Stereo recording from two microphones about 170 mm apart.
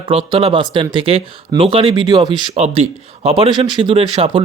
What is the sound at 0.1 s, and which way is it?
Speech, 35° right (ahead or behind).